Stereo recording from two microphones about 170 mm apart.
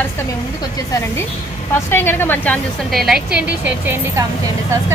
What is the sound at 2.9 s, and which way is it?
A woman's voice, centre (ahead or behind).